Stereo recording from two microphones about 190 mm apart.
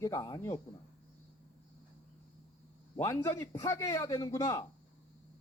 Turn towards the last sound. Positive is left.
turn(degrees=15)  # may be behind; listen again after turning